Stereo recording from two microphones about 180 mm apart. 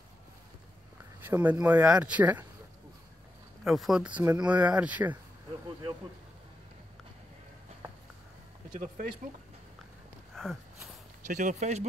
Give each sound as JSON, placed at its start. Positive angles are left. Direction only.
{"t": 1.2, "sound": "speech", "side_deg": -10}
{"t": 3.6, "sound": "speech", "side_deg": 0}
{"t": 8.7, "sound": "speech", "side_deg": -45}
{"t": 10.3, "sound": "a sound", "side_deg": 0}
{"t": 11.2, "sound": "speech", "side_deg": -40}